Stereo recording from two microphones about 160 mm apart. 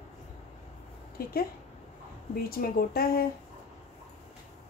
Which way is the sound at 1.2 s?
70° left (ahead or behind).